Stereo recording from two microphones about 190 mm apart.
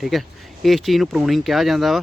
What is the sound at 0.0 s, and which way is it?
Speech, centre (ahead or behind).